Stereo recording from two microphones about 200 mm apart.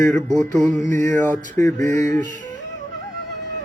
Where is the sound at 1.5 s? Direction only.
15° left (ahead or behind).